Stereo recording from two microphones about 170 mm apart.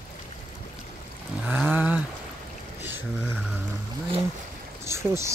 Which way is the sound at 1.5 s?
10° right (ahead or behind).